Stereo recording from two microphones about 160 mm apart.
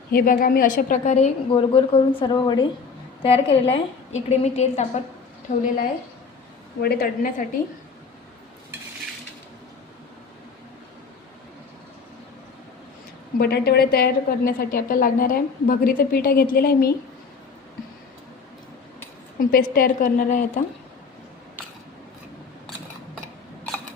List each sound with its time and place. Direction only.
0.1 s a woman's voice: 65° left (ahead or behind); by 1.3 s 45° left (ahead or behind)
1.5 s a woman's voice: 35° left (ahead or behind)
5.5 s a woman's voice: 55° left (ahead or behind)
6.8 s a woman's voice: 70° left (ahead or behind)
13.4 s a woman's voice: 75° left (ahead or behind)
19.4 s a woman's voice: 65° left (ahead or behind)